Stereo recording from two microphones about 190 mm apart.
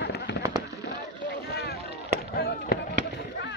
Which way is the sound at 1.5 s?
60° left (ahead or behind).